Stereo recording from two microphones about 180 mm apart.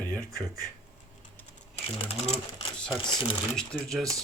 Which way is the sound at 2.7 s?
5° left (ahead or behind).